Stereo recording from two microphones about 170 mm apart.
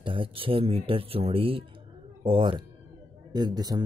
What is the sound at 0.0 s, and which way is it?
Speech, 30° right (ahead or behind).